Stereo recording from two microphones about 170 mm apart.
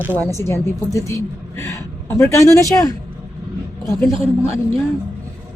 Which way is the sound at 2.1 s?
15° left (ahead or behind).